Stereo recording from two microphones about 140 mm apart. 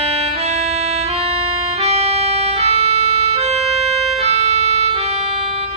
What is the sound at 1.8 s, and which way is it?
Music, 50° right (ahead or behind).